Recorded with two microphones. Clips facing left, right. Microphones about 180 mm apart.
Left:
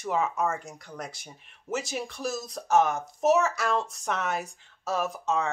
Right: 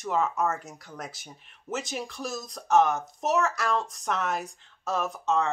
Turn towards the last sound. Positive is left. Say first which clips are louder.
# right 1 dB
turn(degrees=0)  # may be behind; listen again after turning